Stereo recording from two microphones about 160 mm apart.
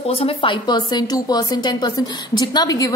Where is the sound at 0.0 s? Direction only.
35° left (ahead or behind).